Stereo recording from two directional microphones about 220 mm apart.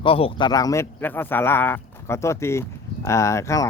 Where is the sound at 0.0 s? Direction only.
25° left (ahead or behind).